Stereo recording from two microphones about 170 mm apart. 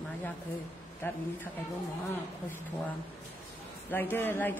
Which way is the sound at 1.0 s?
10° left (ahead or behind).